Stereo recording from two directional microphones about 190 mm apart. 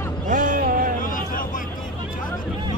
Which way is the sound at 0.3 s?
45° right (ahead or behind).